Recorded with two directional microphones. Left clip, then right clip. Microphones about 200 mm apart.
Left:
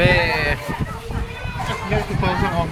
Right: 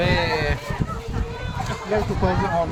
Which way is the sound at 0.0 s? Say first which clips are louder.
Left 4 dB; 5° right (ahead or behind).